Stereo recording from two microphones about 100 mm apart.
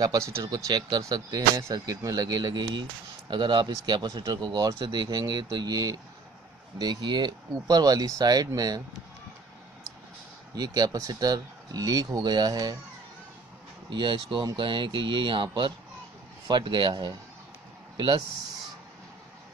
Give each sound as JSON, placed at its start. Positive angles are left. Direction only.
{"t": 0.2, "sound": "speech", "side_deg": -35}
{"t": 10.6, "sound": "speech", "side_deg": -40}
{"t": 13.8, "sound": "speech", "side_deg": -50}